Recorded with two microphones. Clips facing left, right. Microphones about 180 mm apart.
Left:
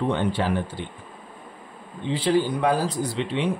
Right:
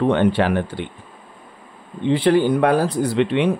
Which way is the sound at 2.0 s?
60° right (ahead or behind).